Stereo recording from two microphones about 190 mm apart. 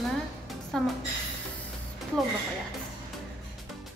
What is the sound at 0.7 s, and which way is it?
Speech, 5° left (ahead or behind).